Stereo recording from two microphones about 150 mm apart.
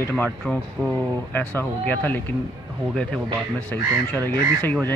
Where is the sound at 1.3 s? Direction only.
15° left (ahead or behind).